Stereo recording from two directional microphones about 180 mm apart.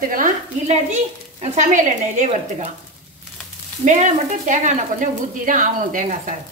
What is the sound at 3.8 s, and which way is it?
Speech, 45° right (ahead or behind).